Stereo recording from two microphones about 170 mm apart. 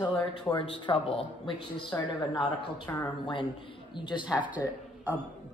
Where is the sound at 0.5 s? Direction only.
30° left (ahead or behind).